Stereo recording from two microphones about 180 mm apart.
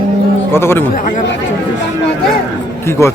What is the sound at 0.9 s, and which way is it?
Speech, 45° left (ahead or behind).